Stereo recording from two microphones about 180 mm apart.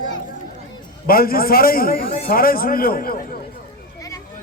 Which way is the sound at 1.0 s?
55° left (ahead or behind).